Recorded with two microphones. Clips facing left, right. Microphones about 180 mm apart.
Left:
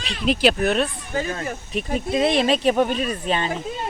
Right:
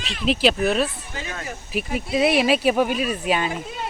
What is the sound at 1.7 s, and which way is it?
Speech, 5° right (ahead or behind).